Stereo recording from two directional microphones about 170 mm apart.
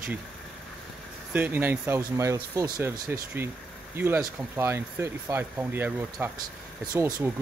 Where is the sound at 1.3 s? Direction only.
10° right (ahead or behind).